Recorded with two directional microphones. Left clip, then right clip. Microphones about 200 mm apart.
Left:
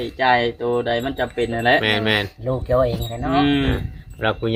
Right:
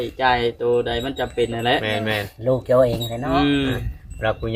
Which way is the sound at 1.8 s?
55° left (ahead or behind).